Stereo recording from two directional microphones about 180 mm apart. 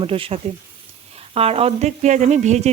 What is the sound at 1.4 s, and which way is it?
Frying, 35° right (ahead or behind).